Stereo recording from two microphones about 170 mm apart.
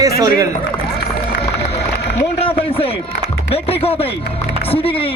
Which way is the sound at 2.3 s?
35° left (ahead or behind).